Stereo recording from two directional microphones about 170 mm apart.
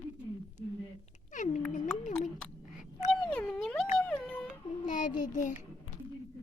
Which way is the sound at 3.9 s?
10° left (ahead or behind).